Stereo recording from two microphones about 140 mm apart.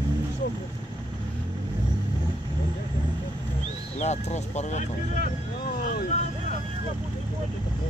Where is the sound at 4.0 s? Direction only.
55° left (ahead or behind).